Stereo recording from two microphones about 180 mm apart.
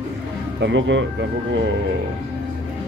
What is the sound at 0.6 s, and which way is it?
Speech, 85° right.